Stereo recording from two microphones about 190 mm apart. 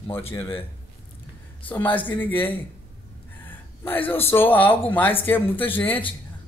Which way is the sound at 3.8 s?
10° left (ahead or behind).